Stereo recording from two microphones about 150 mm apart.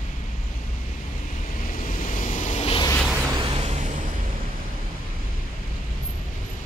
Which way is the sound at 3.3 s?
35° right (ahead or behind).